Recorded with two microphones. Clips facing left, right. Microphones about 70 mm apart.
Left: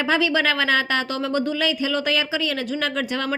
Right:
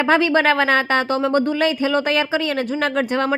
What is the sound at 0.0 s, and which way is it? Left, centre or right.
A woman's voice, right.